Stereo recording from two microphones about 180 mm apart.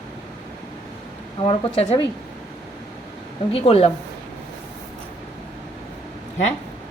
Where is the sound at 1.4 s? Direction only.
30° left (ahead or behind).